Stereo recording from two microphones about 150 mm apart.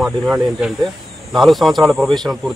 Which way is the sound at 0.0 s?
5° right (ahead or behind).